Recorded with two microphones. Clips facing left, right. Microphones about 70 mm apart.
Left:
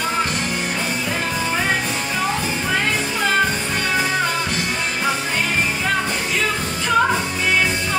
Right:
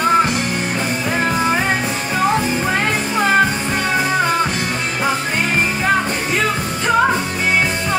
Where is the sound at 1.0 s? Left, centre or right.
Right.